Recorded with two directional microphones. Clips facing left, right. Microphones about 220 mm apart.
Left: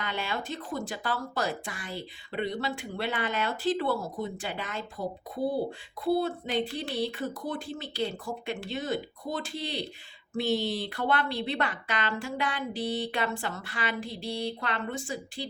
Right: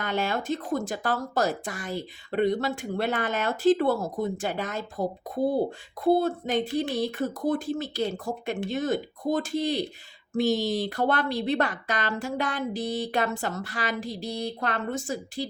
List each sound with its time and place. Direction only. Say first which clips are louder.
0.0 s speech: right 6 dB; 45° right (ahead or behind)